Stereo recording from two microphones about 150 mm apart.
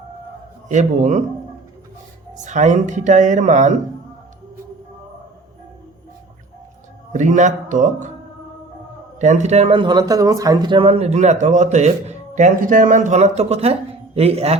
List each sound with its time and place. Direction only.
0.7 s speech: 55° right (ahead or behind)
2.3 s speech: 55° right (ahead or behind)
7.1 s a man's voice: 55° right (ahead or behind)
9.1 s speech: 50° right (ahead or behind)